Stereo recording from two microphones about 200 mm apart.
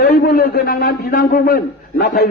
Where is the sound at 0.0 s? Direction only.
50° left (ahead or behind).